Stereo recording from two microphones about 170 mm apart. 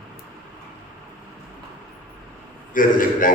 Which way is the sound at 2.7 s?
55° left (ahead or behind).